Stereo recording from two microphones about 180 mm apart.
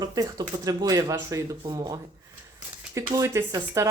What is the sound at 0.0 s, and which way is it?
Speech, 20° right (ahead or behind).